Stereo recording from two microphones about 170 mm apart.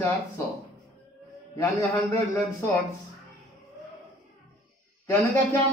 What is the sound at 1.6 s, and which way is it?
Speech, 20° left (ahead or behind).